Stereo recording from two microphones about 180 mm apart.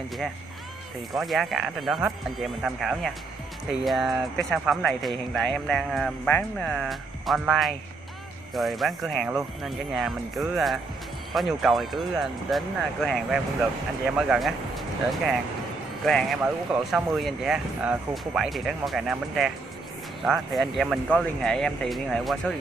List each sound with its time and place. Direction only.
1.1 s speech: centre (ahead or behind)
16.1 s speech: centre (ahead or behind)